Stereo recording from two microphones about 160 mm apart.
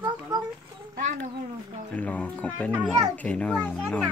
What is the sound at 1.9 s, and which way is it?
Speech, 10° left (ahead or behind).